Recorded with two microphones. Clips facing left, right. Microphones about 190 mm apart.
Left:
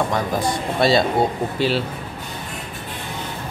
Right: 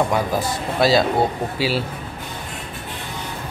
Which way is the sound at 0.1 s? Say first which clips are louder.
Even; 5° right (ahead or behind).